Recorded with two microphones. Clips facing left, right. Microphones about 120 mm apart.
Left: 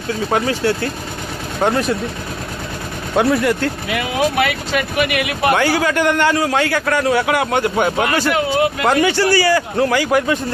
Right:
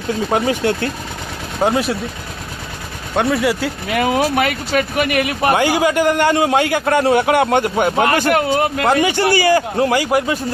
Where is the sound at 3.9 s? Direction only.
45° right (ahead or behind).